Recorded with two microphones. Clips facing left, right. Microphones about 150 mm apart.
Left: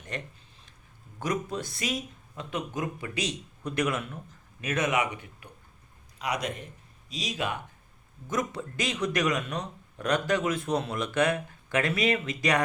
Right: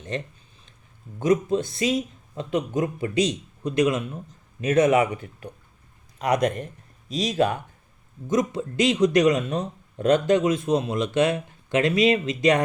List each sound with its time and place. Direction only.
0.1 s speech: 25° right (ahead or behind)
6.1 s a man's voice: 50° right (ahead or behind)
8.3 s speech: 25° right (ahead or behind)